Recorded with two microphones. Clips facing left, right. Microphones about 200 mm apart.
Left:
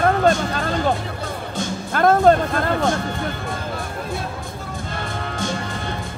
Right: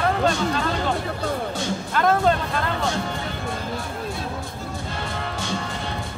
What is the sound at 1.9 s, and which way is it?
Music, 45° left (ahead or behind).